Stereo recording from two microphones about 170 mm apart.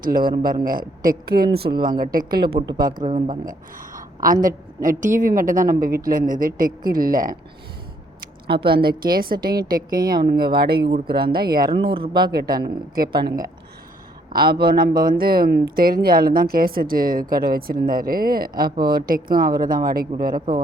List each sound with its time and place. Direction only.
0.0 s speech: 60° right (ahead or behind)
1.7 s speech: 25° right (ahead or behind)
2.1 s speech: 65° right (ahead or behind)
3.0 s speech: 25° right (ahead or behind)
3.8 s a woman's voice: 55° right (ahead or behind)
8.7 s speech: 65° right (ahead or behind)
10.8 s speech: 30° right (ahead or behind)
11.3 s speech: 60° right (ahead or behind)
11.7 s speech: 30° right (ahead or behind)
12.3 s speech: 65° right (ahead or behind)
14.6 s speech: 65° right (ahead or behind)